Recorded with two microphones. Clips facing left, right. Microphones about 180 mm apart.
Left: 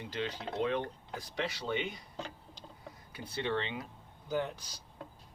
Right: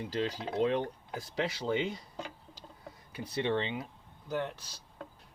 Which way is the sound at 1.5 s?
30° right (ahead or behind).